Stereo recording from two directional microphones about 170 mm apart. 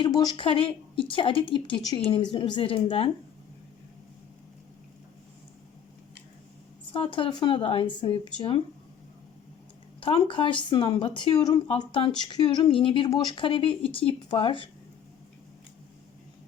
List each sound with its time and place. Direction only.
0.0 s a woman's voice: 25° left (ahead or behind)
6.9 s speech: 30° left (ahead or behind)
10.0 s a woman's voice: 30° left (ahead or behind)